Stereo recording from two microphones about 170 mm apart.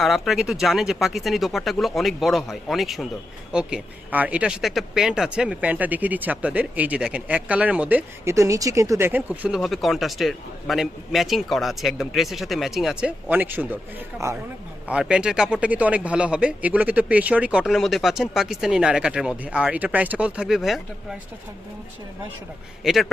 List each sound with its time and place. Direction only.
0.0 s speech: centre (ahead or behind); by 14.4 s 15° right (ahead or behind)
14.8 s speech: 5° right (ahead or behind)
22.8 s speech: centre (ahead or behind)